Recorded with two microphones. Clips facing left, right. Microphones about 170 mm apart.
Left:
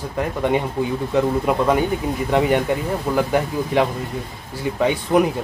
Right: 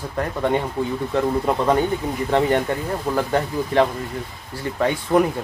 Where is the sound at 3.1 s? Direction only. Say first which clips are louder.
Left 2 dB; 10° left (ahead or behind).